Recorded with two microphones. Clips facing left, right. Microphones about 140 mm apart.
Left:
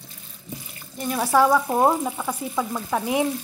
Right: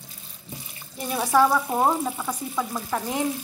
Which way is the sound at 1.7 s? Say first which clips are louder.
Left 3 dB; 10° left (ahead or behind).